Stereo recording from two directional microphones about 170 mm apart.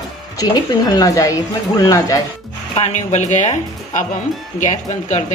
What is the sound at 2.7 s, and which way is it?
Speech, 40° left (ahead or behind).